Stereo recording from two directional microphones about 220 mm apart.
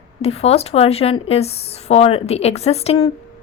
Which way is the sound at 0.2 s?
25° left (ahead or behind).